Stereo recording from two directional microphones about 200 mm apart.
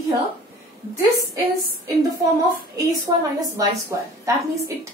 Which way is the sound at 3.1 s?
20° right (ahead or behind).